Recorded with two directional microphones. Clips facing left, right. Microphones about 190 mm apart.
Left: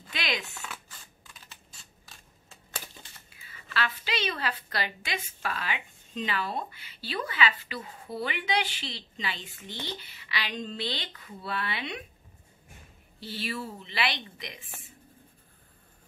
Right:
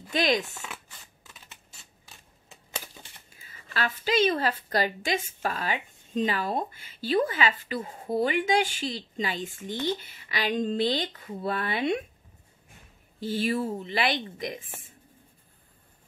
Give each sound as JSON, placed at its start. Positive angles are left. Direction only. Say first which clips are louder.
{"t": 0.1, "sound": "a woman's voice", "louder": "right 9 dB", "side_deg": -45}
{"t": 3.3, "sound": "a woman's voice", "louder": "even", "side_deg": -40}
{"t": 13.2, "sound": "a woman's voice", "louder": "right 8 dB", "side_deg": -45}